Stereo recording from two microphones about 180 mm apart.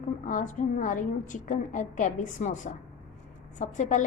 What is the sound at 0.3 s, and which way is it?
A woman's voice, 45° left (ahead or behind).